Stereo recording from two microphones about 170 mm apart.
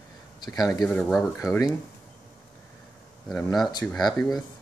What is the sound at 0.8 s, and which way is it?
Speech, 10° left (ahead or behind).